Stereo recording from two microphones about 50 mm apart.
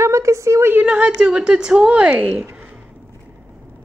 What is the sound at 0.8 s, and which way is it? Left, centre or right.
A woman's voice, right.